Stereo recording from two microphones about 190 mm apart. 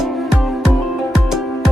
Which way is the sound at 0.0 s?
Centre (ahead or behind).